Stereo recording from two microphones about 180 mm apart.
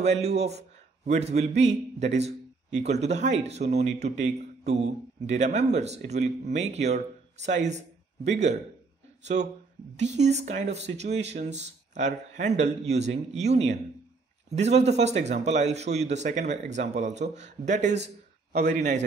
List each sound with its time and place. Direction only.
0.0 s speech: 35° right (ahead or behind)